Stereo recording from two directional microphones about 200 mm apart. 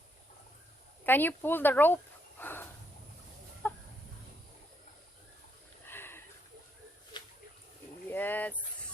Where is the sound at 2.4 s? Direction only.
10° left (ahead or behind).